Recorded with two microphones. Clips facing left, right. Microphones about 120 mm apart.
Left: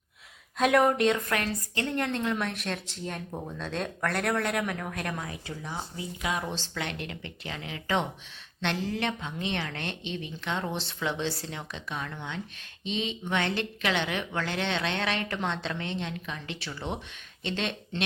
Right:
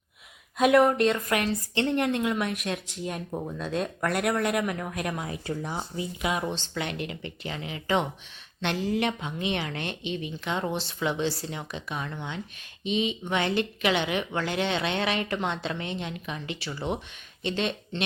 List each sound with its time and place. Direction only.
0.6 s speech: centre (ahead or behind)
1.3 s speech: 20° right (ahead or behind)
6.5 s speech: centre (ahead or behind)